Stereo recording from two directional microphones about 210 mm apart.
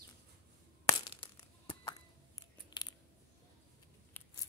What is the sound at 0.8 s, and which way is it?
Crushing, 20° left (ahead or behind).